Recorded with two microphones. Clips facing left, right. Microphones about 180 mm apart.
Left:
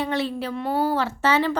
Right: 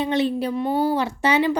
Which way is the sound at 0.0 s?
20° right (ahead or behind).